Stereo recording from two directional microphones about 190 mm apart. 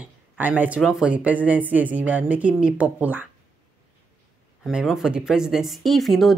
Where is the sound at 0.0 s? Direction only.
10° right (ahead or behind).